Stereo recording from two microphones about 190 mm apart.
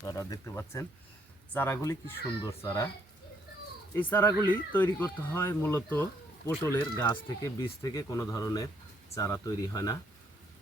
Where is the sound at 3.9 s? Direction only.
10° left (ahead or behind).